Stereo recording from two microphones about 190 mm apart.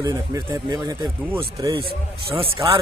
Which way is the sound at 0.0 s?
20° right (ahead or behind).